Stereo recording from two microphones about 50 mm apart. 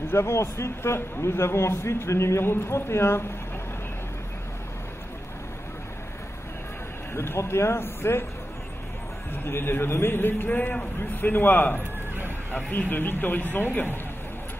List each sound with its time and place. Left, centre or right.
0.1 s a man's voice: left
7.2 s a man's voice: left
9.3 s a man's voice: left
10.5 s a man's voice: left
11.1 s speech: left